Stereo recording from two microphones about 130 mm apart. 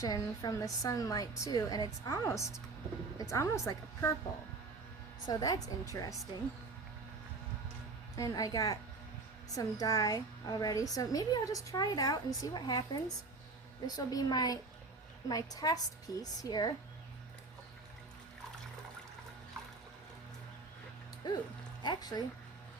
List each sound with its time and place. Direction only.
0.0 s a woman's voice: 25° left (ahead or behind)
5.2 s a woman's voice: 30° left (ahead or behind)
8.1 s a woman's voice: 25° left (ahead or behind)
21.8 s speech: 30° left (ahead or behind)